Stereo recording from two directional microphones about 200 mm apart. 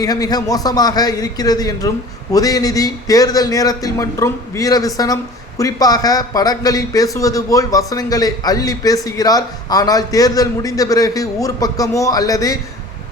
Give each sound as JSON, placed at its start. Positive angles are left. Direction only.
{"t": 0.0, "sound": "a man's voice", "side_deg": 20}